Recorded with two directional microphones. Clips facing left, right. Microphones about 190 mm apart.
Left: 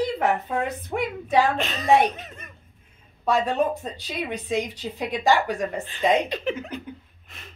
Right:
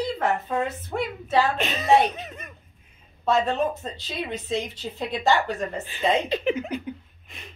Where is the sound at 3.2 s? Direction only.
15° left (ahead or behind).